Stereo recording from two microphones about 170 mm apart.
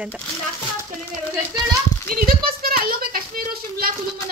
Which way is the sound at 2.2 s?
60° right (ahead or behind).